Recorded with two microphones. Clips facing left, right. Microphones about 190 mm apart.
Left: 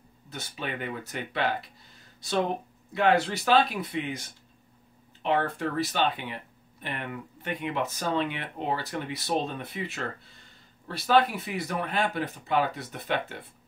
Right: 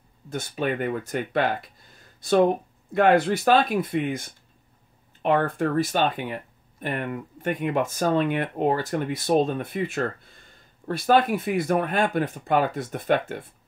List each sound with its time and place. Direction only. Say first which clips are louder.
0.3 s speech: right 9 dB; 50° right (ahead or behind)